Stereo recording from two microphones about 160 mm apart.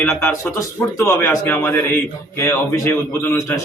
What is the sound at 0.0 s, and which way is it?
A man's voice, 15° left (ahead or behind).